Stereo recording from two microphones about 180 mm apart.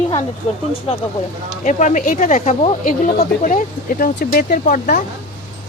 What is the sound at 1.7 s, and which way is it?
Speech, 45° left (ahead or behind).